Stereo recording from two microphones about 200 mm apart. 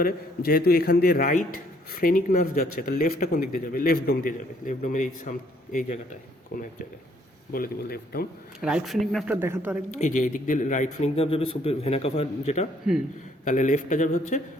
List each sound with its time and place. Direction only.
0.0 s a man's voice: 50° left (ahead or behind)
7.5 s a man's voice: 50° left (ahead or behind)
8.6 s speech: centre (ahead or behind)
9.9 s a man's voice: 40° left (ahead or behind)